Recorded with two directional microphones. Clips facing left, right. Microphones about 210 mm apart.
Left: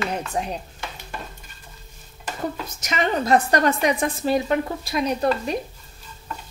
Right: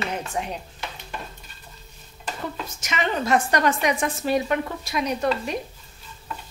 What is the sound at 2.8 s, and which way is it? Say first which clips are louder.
A woman's voice: left 3 dB; 40° left (ahead or behind).